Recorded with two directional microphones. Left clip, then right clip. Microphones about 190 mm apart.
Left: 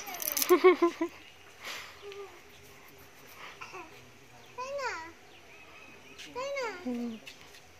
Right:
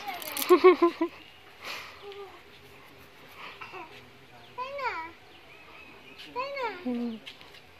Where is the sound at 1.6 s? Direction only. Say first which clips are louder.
Right 3 dB; 5° right (ahead or behind).